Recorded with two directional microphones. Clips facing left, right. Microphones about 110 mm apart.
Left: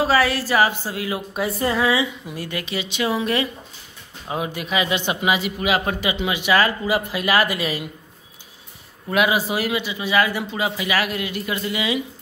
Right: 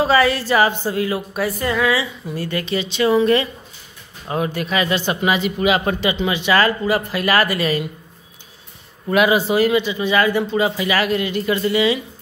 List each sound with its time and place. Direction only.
0.0 s speech: 5° left (ahead or behind)
1.3 s a sound: 25° left (ahead or behind)
2.2 s a man's voice: 15° left (ahead or behind)
9.1 s a man's voice: 5° left (ahead or behind)